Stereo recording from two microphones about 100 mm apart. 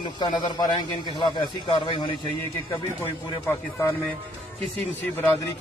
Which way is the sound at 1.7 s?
60° left (ahead or behind).